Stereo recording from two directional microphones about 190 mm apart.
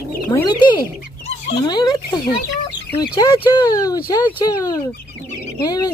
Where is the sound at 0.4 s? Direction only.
20° left (ahead or behind).